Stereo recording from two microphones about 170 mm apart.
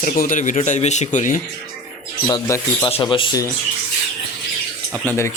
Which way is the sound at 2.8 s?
30° left (ahead or behind).